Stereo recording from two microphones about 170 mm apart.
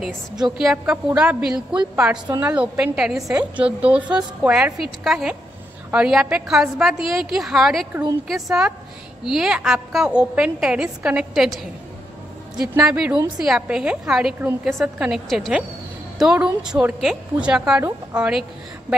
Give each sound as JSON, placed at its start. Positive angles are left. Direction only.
{"t": 0.0, "sound": "a woman's voice", "side_deg": 0}